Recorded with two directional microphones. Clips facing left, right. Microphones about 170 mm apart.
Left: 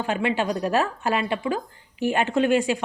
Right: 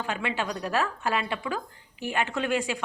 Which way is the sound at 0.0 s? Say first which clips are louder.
Left 6 dB; 25° left (ahead or behind).